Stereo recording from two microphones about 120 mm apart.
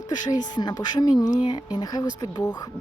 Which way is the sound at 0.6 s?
35° left (ahead or behind).